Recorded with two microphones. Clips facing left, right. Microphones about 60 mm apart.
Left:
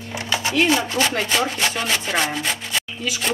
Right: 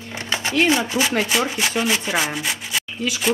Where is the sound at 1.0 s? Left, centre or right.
Centre.